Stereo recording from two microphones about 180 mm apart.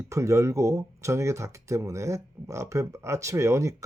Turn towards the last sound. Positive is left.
turn(degrees=-15)  # may be behind; listen again after turning